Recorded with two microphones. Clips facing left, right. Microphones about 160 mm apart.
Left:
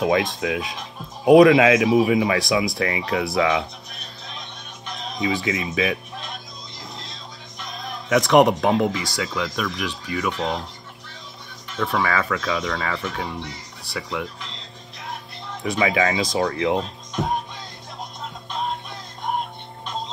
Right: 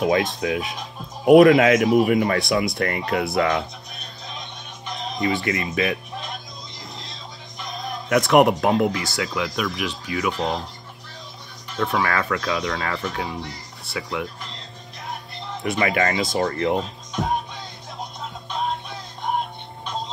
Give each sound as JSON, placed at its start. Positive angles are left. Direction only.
{"t": 0.0, "sound": "speech", "side_deg": 0}
{"t": 7.6, "sound": "speech", "side_deg": 0}
{"t": 11.7, "sound": "speech", "side_deg": 0}
{"t": 15.6, "sound": "speech", "side_deg": 0}
{"t": 18.5, "sound": "music", "side_deg": 0}